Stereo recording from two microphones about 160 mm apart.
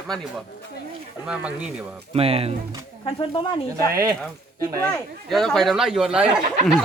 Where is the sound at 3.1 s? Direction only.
30° left (ahead or behind).